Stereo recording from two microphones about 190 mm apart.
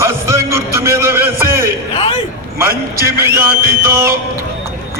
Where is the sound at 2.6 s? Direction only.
15° right (ahead or behind).